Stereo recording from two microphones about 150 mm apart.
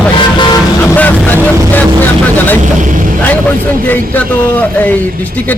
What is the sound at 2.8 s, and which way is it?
Speech, 60° right (ahead or behind).